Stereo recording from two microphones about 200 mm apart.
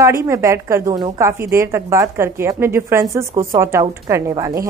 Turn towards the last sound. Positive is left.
turn(degrees=-15)  # may be behind; listen again after turning